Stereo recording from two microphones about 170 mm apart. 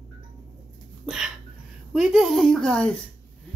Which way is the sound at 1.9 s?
Centre (ahead or behind).